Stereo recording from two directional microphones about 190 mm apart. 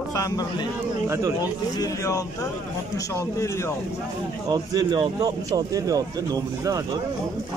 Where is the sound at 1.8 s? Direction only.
15° left (ahead or behind).